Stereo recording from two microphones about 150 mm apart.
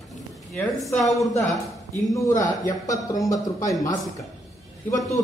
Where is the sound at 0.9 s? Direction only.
Centre (ahead or behind).